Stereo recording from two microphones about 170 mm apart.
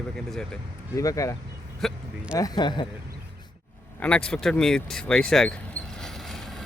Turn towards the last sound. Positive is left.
turn(degrees=0)  # may be behind; listen again after turning